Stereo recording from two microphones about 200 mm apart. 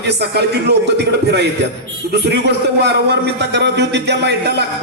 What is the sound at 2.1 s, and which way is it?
A man's voice, 55° right (ahead or behind).